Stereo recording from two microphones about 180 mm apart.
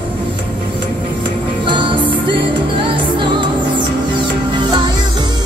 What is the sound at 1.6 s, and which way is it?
Music, 25° right (ahead or behind).